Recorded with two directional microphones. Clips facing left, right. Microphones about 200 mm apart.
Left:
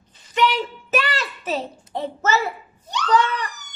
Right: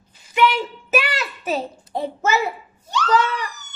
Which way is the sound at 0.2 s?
10° right (ahead or behind).